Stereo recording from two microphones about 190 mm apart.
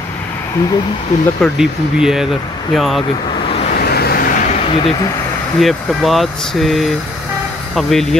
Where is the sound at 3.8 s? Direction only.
55° left (ahead or behind).